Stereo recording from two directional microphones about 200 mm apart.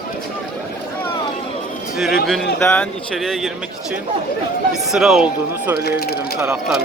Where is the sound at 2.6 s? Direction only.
10° left (ahead or behind).